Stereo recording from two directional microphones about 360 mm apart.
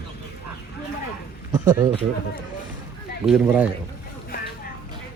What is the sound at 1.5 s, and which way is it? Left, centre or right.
Speech, centre.